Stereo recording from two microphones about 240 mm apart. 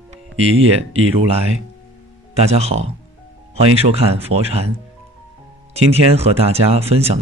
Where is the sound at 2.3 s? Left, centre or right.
Right.